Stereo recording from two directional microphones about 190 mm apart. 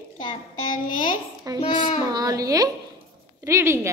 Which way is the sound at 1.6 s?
25° left (ahead or behind).